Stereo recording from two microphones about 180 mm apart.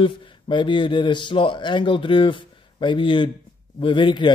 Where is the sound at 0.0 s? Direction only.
25° left (ahead or behind).